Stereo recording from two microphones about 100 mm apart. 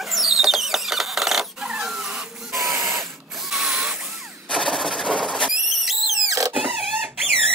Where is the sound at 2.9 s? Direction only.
Centre (ahead or behind).